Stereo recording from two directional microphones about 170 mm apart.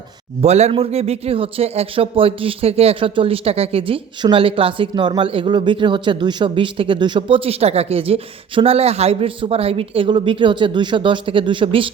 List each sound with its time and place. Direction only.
0.4 s a man's voice: 40° right (ahead or behind)